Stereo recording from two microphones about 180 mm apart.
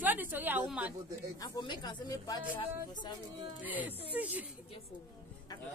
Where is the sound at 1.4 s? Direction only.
20° left (ahead or behind).